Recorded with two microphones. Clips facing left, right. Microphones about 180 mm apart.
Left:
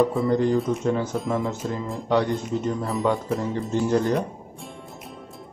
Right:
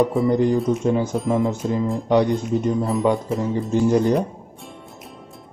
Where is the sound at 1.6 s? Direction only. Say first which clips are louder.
Right 6 dB; 10° right (ahead or behind).